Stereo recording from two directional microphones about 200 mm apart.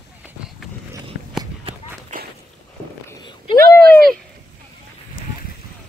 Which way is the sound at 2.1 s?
40° right (ahead or behind).